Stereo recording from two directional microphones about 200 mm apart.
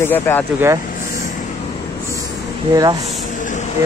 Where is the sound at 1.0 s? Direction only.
40° left (ahead or behind).